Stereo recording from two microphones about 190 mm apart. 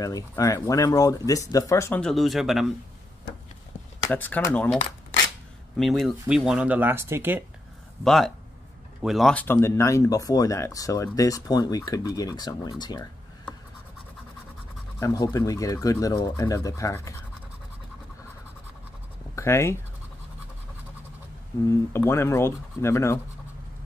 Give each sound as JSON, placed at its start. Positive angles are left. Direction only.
{"t": 0.0, "sound": "speech", "side_deg": 20}
{"t": 4.1, "sound": "speech", "side_deg": 10}
{"t": 5.8, "sound": "speech", "side_deg": 0}
{"t": 8.0, "sound": "speech", "side_deg": 0}
{"t": 15.0, "sound": "speech", "side_deg": 20}
{"t": 19.3, "sound": "speech", "side_deg": 15}
{"t": 21.6, "sound": "speech", "side_deg": 15}